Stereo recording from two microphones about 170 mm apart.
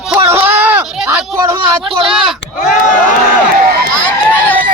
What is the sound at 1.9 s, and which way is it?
Speech, 30° right (ahead or behind).